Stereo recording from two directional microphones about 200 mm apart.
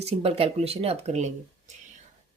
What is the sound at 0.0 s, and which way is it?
A woman's voice, 30° right (ahead or behind).